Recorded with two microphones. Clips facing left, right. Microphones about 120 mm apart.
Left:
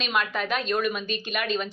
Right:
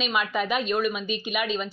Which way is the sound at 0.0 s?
5° right (ahead or behind).